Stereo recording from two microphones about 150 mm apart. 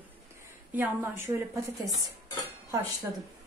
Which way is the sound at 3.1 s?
15° right (ahead or behind).